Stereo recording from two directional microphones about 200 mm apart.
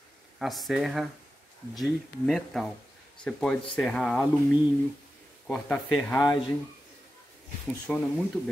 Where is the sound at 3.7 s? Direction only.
5° left (ahead or behind).